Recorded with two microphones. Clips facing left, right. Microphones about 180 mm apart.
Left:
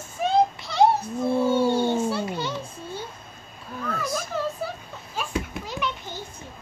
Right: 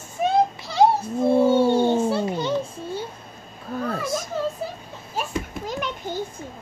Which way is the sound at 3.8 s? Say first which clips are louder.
Right 2 dB; 30° right (ahead or behind).